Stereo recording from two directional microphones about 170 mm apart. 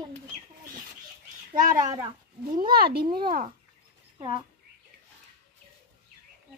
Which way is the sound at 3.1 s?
60° right (ahead or behind).